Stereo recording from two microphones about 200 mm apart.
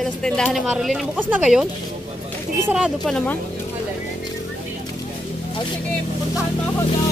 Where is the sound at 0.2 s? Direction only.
Centre (ahead or behind).